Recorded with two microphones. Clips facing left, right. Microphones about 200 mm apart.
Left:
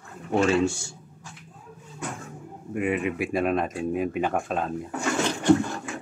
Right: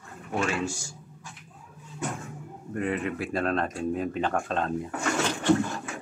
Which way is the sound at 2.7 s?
15° left (ahead or behind).